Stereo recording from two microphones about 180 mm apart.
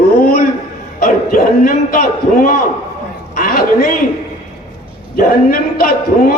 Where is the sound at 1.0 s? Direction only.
50° left (ahead or behind).